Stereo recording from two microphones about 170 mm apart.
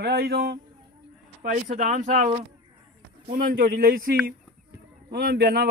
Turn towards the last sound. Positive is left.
turn(degrees=-60)  # may be behind; listen again after turning